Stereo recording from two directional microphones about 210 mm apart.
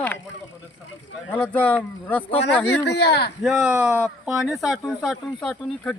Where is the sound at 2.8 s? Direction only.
50° left (ahead or behind).